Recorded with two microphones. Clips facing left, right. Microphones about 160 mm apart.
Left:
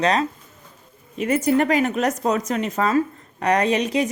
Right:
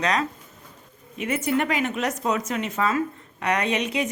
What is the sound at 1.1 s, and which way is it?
A woman's voice, 40° left (ahead or behind).